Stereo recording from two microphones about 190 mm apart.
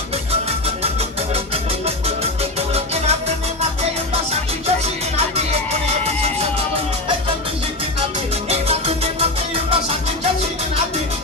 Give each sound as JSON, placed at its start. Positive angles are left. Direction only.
{"t": 2.7, "sound": "music", "side_deg": -35}
{"t": 8.5, "sound": "music", "side_deg": -30}